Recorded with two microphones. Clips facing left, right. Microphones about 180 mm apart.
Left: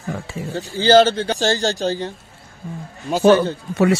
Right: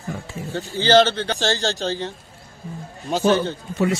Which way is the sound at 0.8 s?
10° left (ahead or behind).